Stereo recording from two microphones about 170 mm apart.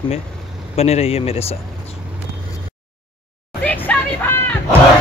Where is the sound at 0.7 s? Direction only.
35° left (ahead or behind).